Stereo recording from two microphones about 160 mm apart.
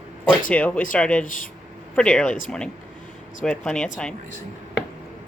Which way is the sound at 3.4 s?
5° left (ahead or behind).